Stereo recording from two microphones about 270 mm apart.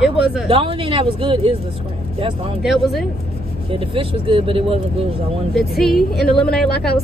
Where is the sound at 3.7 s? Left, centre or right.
Centre.